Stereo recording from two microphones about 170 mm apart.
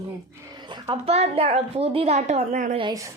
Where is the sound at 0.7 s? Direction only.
30° right (ahead or behind).